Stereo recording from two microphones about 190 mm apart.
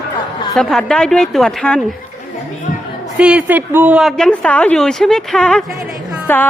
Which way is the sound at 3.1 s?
5° right (ahead or behind).